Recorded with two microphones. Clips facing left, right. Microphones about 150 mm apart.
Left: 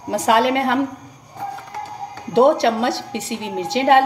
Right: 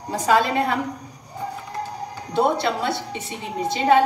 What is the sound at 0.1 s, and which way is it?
Speech, 80° left.